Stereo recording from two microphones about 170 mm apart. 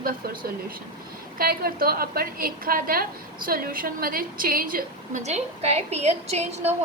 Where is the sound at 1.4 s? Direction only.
60° right (ahead or behind).